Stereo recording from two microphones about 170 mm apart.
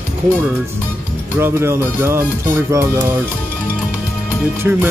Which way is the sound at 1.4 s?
15° right (ahead or behind).